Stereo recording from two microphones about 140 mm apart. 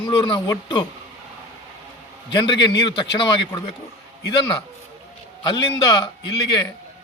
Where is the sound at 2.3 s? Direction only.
30° left (ahead or behind).